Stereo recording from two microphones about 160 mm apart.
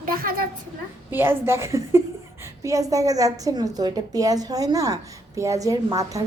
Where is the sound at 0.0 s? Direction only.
60° right (ahead or behind).